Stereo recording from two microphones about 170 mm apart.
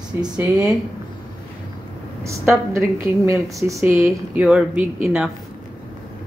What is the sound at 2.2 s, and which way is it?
A woman's voice, 15° right (ahead or behind).